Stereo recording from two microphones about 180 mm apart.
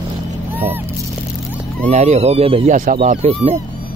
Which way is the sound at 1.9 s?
40° right (ahead or behind).